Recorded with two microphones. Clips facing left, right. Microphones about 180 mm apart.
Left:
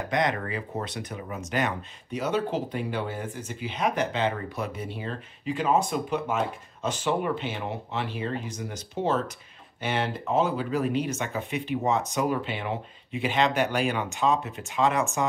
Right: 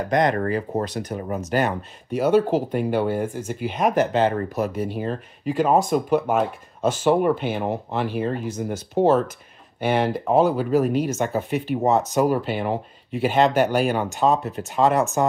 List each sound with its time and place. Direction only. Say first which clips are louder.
0.1 s speech: right 7 dB; 45° right (ahead or behind)